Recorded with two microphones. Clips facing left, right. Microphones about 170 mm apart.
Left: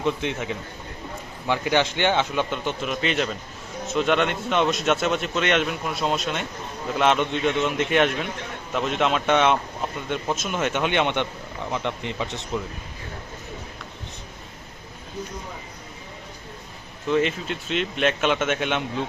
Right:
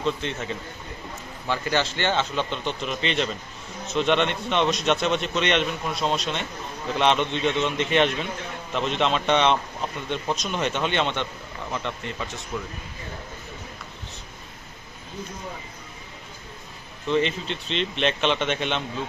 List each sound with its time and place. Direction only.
0.0 s a man's voice: 15° left (ahead or behind)
17.1 s a man's voice: 5° left (ahead or behind)